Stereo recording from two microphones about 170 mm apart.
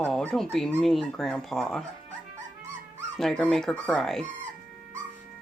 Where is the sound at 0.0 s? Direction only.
5° left (ahead or behind).